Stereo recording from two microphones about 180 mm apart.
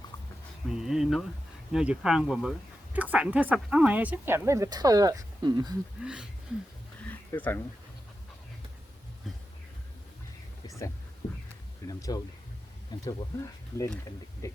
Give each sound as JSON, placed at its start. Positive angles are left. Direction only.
{"t": 0.7, "sound": "speech", "side_deg": 0}
{"t": 6.0, "sound": "speech", "side_deg": -5}
{"t": 7.0, "sound": "a sound", "side_deg": 10}
{"t": 10.7, "sound": "a sound", "side_deg": 15}
{"t": 11.9, "sound": "speech", "side_deg": 20}
{"t": 14.4, "sound": "speech", "side_deg": 20}